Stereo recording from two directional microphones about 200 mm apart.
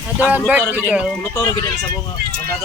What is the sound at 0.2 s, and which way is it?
Speech, 10° right (ahead or behind).